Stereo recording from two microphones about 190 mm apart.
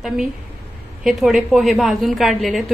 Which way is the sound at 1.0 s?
Centre (ahead or behind).